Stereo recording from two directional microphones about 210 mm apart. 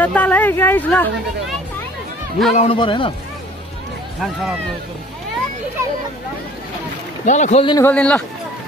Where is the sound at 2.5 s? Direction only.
25° left (ahead or behind).